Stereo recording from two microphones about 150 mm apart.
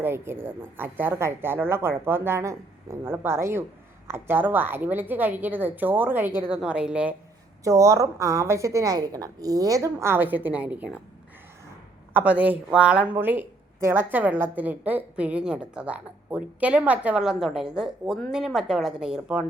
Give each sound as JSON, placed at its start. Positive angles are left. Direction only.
{"t": 0.0, "sound": "a woman's voice", "side_deg": -15}
{"t": 7.6, "sound": "a woman's voice", "side_deg": -20}
{"t": 12.1, "sound": "a woman's voice", "side_deg": -10}